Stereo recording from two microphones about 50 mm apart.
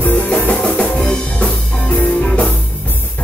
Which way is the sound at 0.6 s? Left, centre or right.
Centre.